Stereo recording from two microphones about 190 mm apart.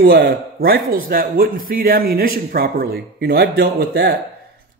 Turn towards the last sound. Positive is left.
turn(degrees=-55)  # may be behind; listen again after turning